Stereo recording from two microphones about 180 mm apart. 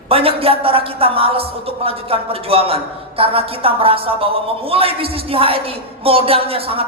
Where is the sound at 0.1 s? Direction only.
30° right (ahead or behind).